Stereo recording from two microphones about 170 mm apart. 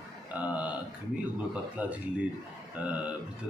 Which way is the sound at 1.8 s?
5° right (ahead or behind).